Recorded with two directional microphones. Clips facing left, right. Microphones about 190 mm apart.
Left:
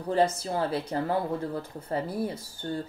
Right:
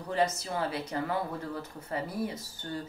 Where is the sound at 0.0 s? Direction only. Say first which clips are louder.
Left 4 dB; 30° left (ahead or behind).